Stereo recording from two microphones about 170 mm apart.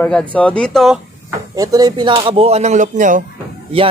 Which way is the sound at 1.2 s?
20° right (ahead or behind).